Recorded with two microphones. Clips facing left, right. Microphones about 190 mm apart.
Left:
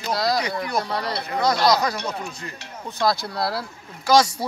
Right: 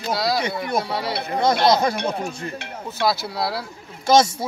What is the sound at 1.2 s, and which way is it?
Speech, 25° right (ahead or behind).